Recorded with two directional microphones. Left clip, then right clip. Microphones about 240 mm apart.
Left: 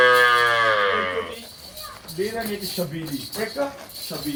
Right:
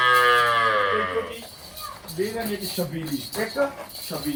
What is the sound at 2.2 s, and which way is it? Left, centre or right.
Speech, centre.